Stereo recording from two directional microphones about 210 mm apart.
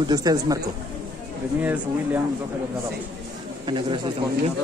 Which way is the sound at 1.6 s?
10° right (ahead or behind).